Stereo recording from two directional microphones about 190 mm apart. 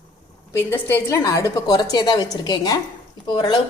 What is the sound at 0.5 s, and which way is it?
A woman's voice, 10° left (ahead or behind).